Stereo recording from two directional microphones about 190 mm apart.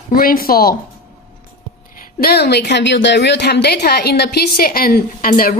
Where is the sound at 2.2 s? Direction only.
55° left (ahead or behind).